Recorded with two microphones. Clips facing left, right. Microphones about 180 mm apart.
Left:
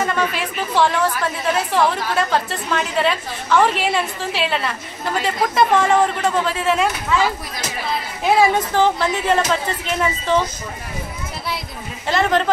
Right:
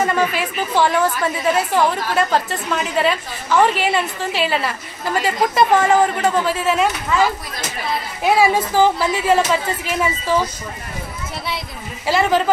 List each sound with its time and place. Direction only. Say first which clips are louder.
0.0 s a woman's voice: right 2 dB; 5° right (ahead or behind)
8.4 s a woman's voice: right 1 dB; 10° right (ahead or behind)
12.1 s a woman's voice: right 1 dB; 5° right (ahead or behind)